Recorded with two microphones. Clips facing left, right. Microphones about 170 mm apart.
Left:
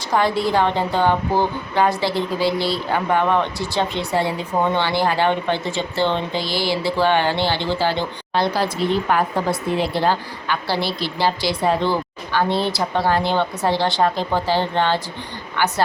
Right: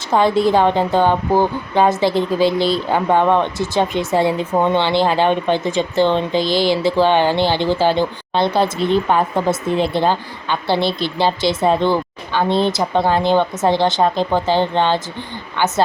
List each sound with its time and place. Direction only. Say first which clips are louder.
0.3 s a woman's voice: right 5 dB; 20° right (ahead or behind)